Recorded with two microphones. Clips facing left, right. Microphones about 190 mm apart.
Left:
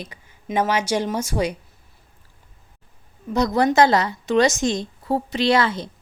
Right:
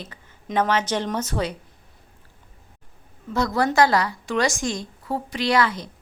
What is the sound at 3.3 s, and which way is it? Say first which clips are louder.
A woman's voice: left 3 dB; 20° left (ahead or behind).